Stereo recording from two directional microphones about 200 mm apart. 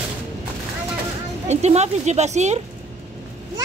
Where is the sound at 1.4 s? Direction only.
35° right (ahead or behind).